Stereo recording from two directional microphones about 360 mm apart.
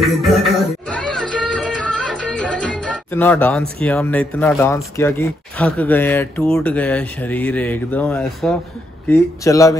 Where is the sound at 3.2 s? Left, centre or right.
Centre.